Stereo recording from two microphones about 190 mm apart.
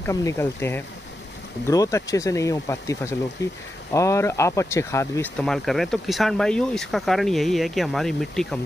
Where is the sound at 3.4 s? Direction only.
65° left (ahead or behind).